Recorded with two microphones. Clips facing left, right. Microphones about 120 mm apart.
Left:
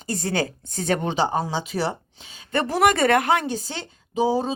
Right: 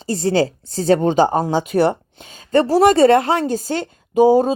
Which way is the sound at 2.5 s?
35° right (ahead or behind).